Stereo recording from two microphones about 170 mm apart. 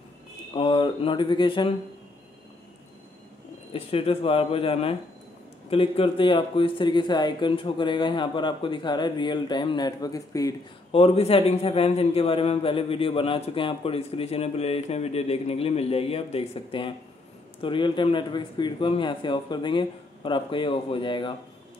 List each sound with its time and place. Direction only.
0.5 s speech: 30° left (ahead or behind)
3.7 s a man's voice: 35° left (ahead or behind)
10.9 s a man's voice: 35° left (ahead or behind)